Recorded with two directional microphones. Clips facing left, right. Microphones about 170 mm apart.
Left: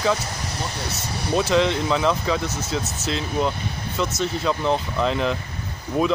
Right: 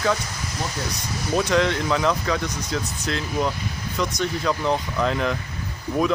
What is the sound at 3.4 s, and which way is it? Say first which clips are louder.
Speech: left 1 dB; 30° left (ahead or behind).